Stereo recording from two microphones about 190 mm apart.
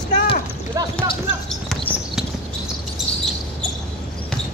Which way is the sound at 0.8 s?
15° right (ahead or behind).